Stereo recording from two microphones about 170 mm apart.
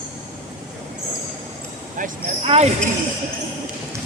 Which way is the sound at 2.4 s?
35° right (ahead or behind).